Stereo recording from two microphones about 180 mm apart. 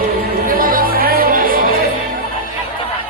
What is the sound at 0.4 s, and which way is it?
Music, 55° right (ahead or behind).